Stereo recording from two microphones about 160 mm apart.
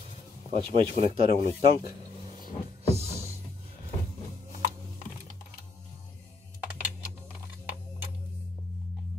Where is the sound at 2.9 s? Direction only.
40° right (ahead or behind).